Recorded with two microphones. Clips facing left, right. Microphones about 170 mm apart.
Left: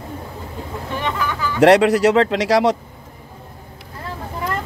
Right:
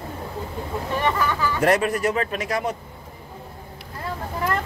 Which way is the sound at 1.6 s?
80° left.